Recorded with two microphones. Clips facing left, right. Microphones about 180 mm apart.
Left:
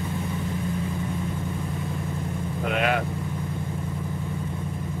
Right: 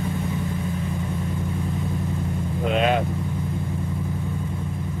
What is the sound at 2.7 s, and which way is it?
Speech, 25° right (ahead or behind).